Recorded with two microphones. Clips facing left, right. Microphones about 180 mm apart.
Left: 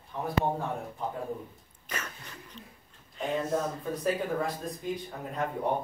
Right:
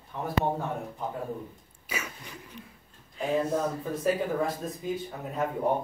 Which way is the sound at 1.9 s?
10° right (ahead or behind).